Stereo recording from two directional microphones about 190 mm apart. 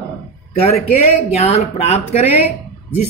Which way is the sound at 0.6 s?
35° left (ahead or behind).